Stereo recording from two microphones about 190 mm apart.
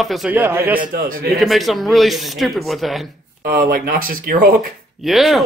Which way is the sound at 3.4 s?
50° right (ahead or behind).